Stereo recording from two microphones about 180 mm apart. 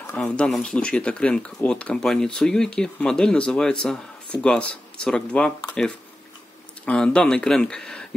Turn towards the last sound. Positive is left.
turn(degrees=5)  # may be behind; listen again after turning